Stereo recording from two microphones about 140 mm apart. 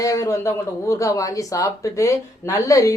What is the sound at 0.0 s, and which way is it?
Speech, 25° left (ahead or behind).